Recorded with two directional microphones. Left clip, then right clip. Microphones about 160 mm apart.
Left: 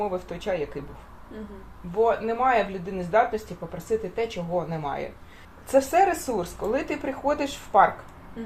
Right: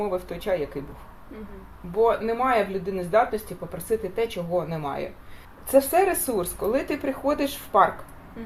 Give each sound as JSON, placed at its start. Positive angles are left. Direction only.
{"t": 0.0, "sound": "a woman's voice", "side_deg": -30}
{"t": 2.0, "sound": "a woman's voice", "side_deg": -30}